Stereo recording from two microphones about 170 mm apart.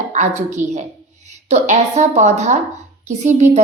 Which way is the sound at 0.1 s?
45° right (ahead or behind).